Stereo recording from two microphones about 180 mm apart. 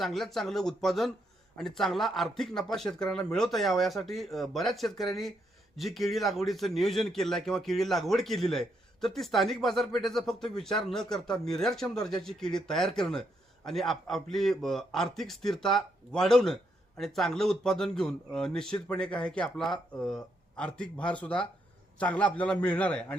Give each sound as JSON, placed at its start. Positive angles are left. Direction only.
{"t": 0.0, "sound": "a man's voice", "side_deg": 0}